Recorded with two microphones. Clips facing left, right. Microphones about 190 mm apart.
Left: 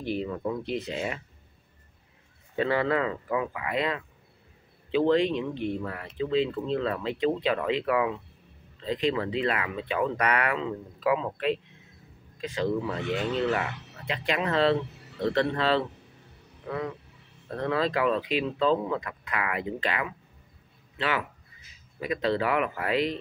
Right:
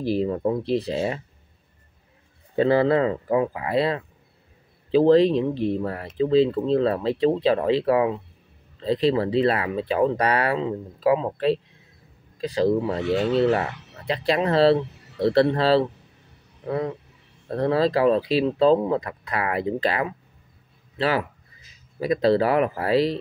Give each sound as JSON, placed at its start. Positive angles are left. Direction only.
{"t": 0.0, "sound": "speech", "side_deg": -35}
{"t": 2.5, "sound": "speech", "side_deg": -35}